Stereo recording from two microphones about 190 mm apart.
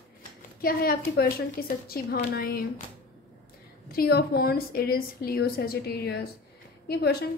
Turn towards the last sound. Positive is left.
turn(degrees=60)  # may be behind; listen again after turning